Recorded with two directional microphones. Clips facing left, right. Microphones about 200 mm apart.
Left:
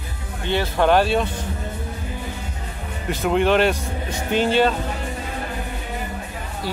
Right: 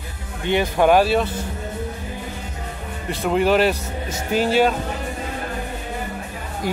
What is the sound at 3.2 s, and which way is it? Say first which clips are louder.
Speech: even; 5° right (ahead or behind).